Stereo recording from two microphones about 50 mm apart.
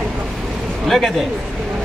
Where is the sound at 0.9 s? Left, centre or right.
Centre.